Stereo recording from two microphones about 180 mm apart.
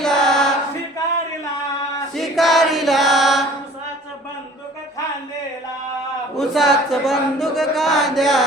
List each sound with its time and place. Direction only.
0.0 s choir: 5° left (ahead or behind)
2.1 s choir: centre (ahead or behind)
6.3 s a sound: centre (ahead or behind)